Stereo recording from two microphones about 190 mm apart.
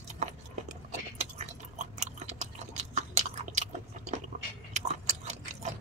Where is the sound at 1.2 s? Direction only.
35° right (ahead or behind).